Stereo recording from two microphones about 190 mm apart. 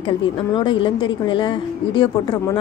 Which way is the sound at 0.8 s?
25° left (ahead or behind).